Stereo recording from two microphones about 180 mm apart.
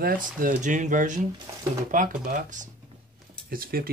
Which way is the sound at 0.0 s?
50° right (ahead or behind).